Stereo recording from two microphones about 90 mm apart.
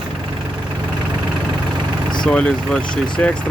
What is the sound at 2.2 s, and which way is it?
Speech, 10° left (ahead or behind).